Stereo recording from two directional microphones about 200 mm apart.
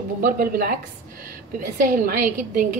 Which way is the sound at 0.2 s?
45° right (ahead or behind).